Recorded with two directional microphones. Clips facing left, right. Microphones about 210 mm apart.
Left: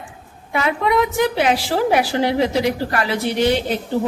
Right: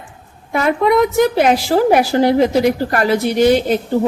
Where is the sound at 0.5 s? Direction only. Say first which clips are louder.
Right 5 dB; 45° right (ahead or behind).